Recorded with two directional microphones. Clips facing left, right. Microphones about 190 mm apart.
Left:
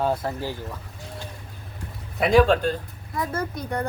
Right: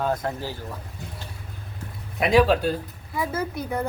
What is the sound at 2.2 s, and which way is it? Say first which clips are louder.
Speech: left 1 dB; centre (ahead or behind).